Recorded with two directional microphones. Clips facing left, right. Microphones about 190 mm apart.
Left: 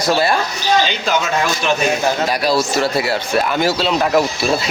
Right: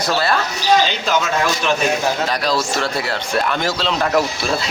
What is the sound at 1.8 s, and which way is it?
Speech, 5° left (ahead or behind).